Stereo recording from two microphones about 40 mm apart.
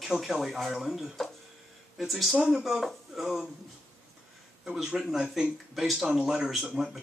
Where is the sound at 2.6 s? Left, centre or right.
Centre.